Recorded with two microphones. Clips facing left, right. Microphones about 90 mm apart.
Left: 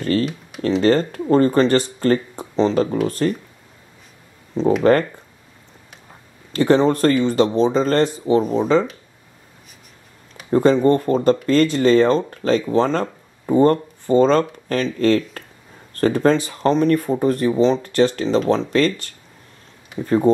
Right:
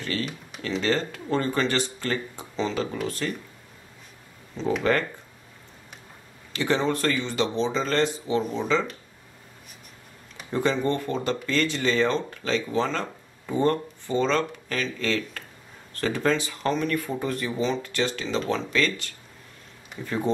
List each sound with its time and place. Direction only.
0.0 s computer keyboard: 45° left (ahead or behind)
0.6 s speech: 40° left (ahead or behind)
4.9 s speech: 40° left (ahead or behind)
6.5 s speech: 45° left (ahead or behind)
10.5 s speech: 40° left (ahead or behind)